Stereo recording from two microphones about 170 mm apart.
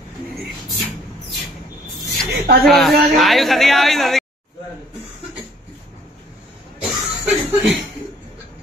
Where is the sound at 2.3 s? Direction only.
65° right (ahead or behind).